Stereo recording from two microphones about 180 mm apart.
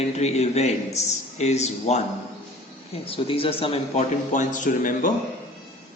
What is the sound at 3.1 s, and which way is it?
A man's voice, 30° left (ahead or behind).